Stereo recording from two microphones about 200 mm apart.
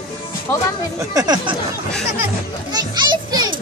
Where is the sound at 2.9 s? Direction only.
20° right (ahead or behind).